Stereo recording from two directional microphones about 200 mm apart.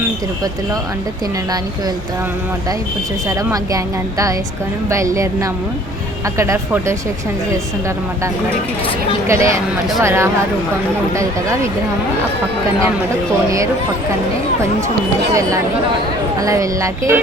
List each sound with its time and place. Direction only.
3.2 s speech: 15° right (ahead or behind)
4.9 s speech: 15° right (ahead or behind)
9.2 s speech: 15° right (ahead or behind)
15.3 s speech: 15° right (ahead or behind)